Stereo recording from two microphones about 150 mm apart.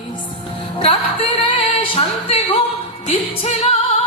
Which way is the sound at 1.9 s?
40° left (ahead or behind).